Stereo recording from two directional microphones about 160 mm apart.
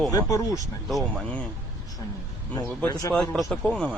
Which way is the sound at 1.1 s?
5° left (ahead or behind).